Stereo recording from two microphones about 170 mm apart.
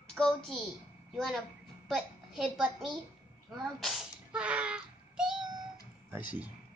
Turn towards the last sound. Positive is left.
turn(degrees=-10)  # may be behind; listen again after turning